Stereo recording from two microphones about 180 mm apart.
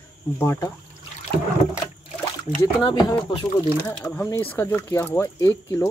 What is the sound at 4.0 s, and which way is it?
Speech, 10° left (ahead or behind).